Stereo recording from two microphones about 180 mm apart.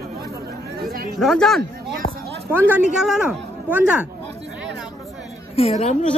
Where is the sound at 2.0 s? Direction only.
40° left (ahead or behind).